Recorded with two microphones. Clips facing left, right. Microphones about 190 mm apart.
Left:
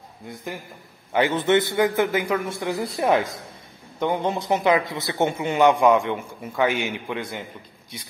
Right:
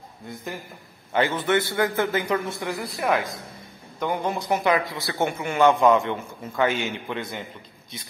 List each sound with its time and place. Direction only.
1.1 s speech: 20° left (ahead or behind)
2.2 s speech: 5° left (ahead or behind)
2.6 s speech: 20° left (ahead or behind)